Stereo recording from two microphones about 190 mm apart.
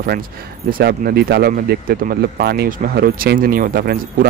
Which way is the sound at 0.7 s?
50° right (ahead or behind).